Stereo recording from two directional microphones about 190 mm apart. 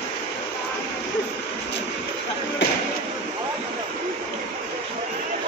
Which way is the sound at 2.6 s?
70° left (ahead or behind).